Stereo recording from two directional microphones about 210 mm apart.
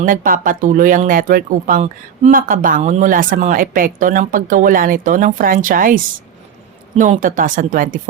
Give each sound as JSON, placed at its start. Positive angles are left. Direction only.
{"t": 0.0, "sound": "speech", "side_deg": -40}